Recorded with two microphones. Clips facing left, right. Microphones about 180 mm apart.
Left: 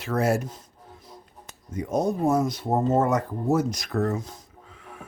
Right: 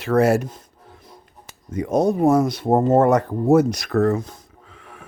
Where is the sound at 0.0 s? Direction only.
70° right (ahead or behind).